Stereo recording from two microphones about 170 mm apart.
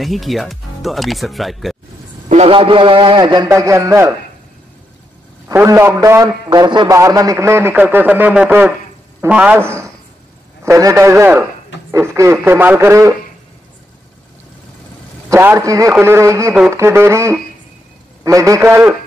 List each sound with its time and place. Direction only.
0.0 s speech: centre (ahead or behind)
2.2 s a man's voice: 40° right (ahead or behind); by 4.1 s 15° right (ahead or behind)
5.5 s a man's voice: 15° right (ahead or behind)
15.2 s a man's voice: 15° right (ahead or behind)